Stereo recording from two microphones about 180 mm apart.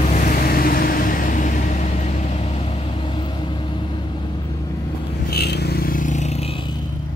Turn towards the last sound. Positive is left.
turn(degrees=35)  # may be behind; listen again after turning